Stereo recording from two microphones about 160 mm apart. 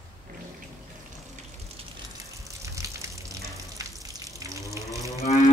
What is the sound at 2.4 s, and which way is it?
Water, 20° right (ahead or behind).